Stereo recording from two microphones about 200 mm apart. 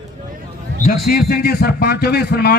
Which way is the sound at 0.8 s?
45° left (ahead or behind).